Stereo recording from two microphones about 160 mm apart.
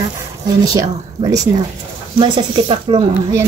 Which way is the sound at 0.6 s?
20° right (ahead or behind).